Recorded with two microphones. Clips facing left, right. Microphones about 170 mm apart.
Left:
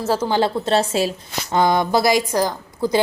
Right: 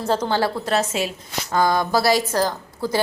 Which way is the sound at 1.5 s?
20° left (ahead or behind).